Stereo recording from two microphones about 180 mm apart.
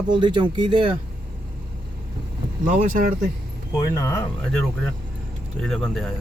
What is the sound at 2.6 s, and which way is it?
Speech, 50° right (ahead or behind).